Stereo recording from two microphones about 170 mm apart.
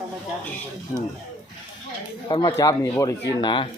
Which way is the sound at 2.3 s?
25° left (ahead or behind).